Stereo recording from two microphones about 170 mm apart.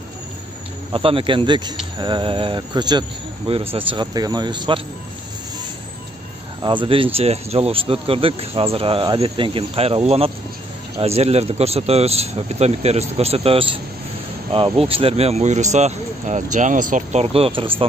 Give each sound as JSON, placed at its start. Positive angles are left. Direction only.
{"t": 0.9, "sound": "speech", "side_deg": -30}
{"t": 6.6, "sound": "speech", "side_deg": -30}